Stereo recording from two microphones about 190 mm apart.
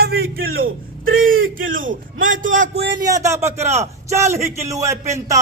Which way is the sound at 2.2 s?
45° right (ahead or behind).